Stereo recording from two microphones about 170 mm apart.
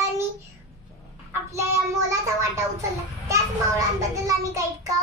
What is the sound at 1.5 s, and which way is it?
Child singing, 15° right (ahead or behind).